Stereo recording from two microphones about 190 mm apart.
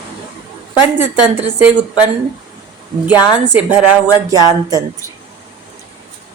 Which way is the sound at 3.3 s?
10° right (ahead or behind).